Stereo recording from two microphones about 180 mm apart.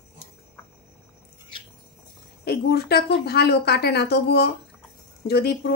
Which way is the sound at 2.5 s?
65° left (ahead or behind).